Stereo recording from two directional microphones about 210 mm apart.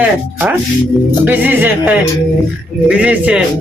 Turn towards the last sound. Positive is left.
turn(degrees=-5)  # may be behind; listen again after turning